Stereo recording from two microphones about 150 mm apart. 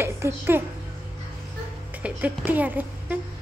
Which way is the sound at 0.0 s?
15° right (ahead or behind).